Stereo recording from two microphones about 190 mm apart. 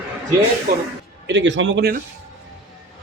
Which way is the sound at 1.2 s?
70° right (ahead or behind).